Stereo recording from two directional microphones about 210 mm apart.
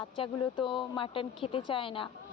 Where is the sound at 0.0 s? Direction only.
25° left (ahead or behind).